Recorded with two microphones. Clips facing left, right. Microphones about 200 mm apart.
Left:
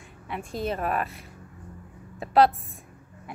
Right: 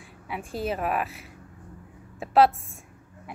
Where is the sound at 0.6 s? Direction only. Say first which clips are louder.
Even; 5° right (ahead or behind).